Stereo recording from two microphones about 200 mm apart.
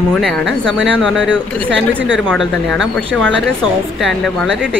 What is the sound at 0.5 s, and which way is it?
Speech, 65° right (ahead or behind).